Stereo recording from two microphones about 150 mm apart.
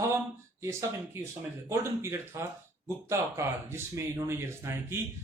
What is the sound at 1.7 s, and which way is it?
Speech, 20° right (ahead or behind).